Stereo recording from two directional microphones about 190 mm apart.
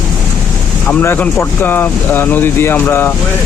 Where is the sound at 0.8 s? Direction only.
10° left (ahead or behind).